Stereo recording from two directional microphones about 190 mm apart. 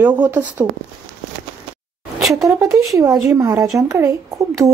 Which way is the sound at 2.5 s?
15° right (ahead or behind).